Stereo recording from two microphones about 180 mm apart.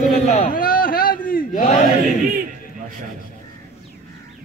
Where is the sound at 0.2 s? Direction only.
40° left (ahead or behind).